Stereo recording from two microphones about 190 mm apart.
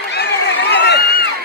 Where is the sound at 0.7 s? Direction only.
60° left (ahead or behind).